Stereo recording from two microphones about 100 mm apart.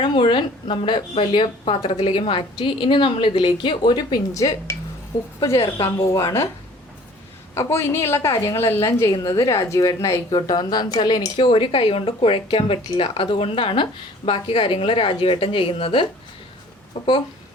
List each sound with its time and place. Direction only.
0.0 s speech: 50° left (ahead or behind); by 4.8 s 30° left (ahead or behind)
6.0 s a woman's voice: 30° left (ahead or behind)
7.5 s a woman's voice: 25° left (ahead or behind); by 16.0 s 65° left (ahead or behind)
16.9 s speech: 75° left (ahead or behind)